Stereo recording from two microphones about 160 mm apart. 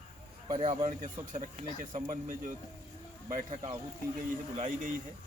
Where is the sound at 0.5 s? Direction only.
40° right (ahead or behind).